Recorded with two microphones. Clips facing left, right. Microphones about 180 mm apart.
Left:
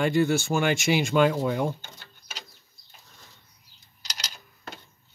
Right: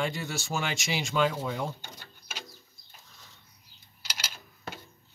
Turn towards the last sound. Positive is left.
turn(degrees=-5)  # may be behind; listen again after turning